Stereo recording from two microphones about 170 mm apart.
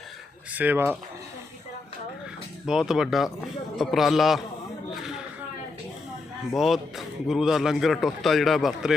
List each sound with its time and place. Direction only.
0.5 s speech: 10° right (ahead or behind)
2.6 s a man's voice: 5° right (ahead or behind)
6.5 s a man's voice: centre (ahead or behind)